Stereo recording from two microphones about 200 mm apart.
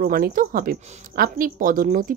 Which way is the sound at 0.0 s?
45° right (ahead or behind).